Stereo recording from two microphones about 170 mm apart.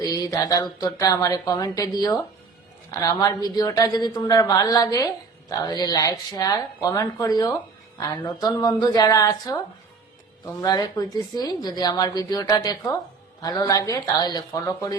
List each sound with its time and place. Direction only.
0.0 s a woman's voice: 20° left (ahead or behind)